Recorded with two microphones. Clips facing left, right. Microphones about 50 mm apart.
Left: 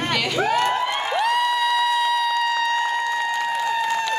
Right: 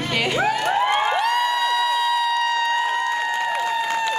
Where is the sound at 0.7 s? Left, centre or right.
Right.